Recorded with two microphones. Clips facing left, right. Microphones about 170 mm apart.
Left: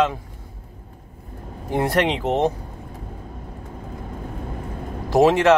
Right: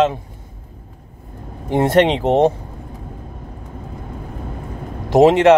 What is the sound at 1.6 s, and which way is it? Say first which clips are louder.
Speech: right 6 dB; 25° right (ahead or behind).